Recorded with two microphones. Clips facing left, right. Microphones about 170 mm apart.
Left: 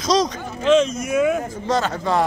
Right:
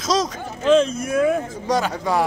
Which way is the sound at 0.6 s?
30° right (ahead or behind).